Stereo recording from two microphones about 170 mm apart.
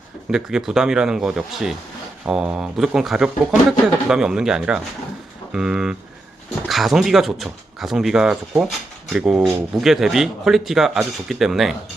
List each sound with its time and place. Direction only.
0.3 s speech: 5° right (ahead or behind)